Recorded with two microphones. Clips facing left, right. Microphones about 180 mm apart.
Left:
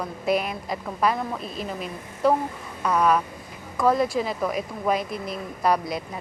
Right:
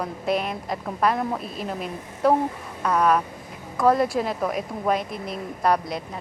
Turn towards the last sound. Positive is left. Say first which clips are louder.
# right 1 dB
turn(degrees=5)  # may be behind; listen again after turning